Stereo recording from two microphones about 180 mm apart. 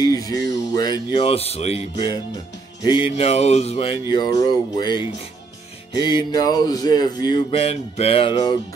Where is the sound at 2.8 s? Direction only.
25° left (ahead or behind).